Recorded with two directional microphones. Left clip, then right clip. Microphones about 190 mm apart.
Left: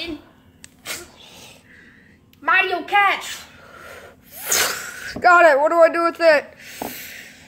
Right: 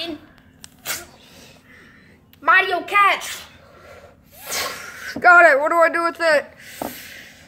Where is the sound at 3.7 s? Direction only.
30° left (ahead or behind).